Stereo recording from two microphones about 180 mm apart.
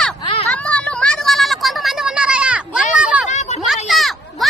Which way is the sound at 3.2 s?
40° left (ahead or behind).